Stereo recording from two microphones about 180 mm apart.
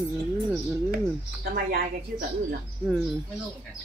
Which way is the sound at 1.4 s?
55° right (ahead or behind).